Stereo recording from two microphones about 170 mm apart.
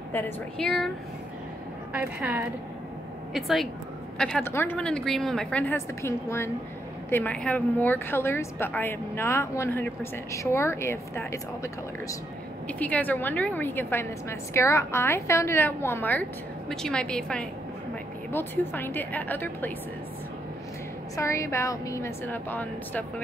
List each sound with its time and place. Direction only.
0.1 s a woman's voice: 10° left (ahead or behind)
1.9 s a woman's voice: 10° right (ahead or behind); by 19.7 s 10° left (ahead or behind)
21.2 s a woman's voice: 15° left (ahead or behind)